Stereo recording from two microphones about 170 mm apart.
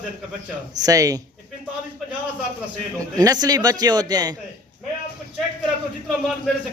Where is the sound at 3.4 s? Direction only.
20° right (ahead or behind).